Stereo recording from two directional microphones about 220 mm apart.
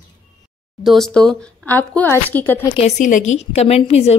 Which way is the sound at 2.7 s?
30° left (ahead or behind).